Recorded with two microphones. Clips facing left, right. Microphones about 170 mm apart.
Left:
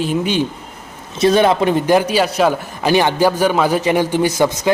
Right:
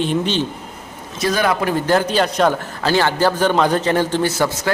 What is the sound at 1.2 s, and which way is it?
A man's voice, 25° left (ahead or behind).